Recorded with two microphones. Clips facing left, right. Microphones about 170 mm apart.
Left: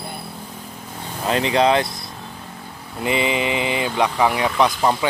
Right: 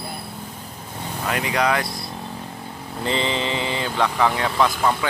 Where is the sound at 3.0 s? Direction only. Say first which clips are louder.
Left 3 dB; 15° left (ahead or behind).